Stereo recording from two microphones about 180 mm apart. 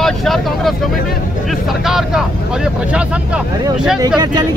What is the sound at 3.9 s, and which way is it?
Speech, 20° right (ahead or behind).